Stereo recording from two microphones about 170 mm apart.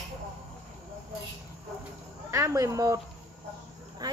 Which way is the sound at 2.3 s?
15° right (ahead or behind).